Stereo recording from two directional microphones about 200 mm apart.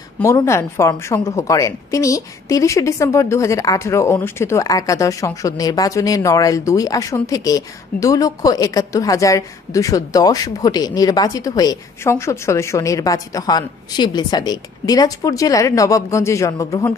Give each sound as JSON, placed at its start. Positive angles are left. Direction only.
{"t": 0.2, "sound": "a woman's voice", "side_deg": 15}